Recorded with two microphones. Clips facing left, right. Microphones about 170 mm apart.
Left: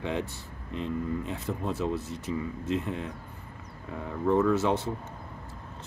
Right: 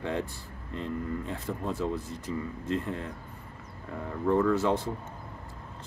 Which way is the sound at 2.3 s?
15° left (ahead or behind).